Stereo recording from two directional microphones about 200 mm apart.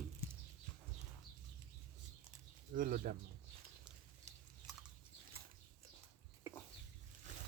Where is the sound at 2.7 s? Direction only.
45° right (ahead or behind).